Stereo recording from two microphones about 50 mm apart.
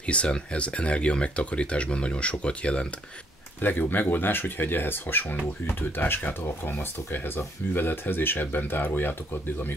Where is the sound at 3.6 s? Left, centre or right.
Left.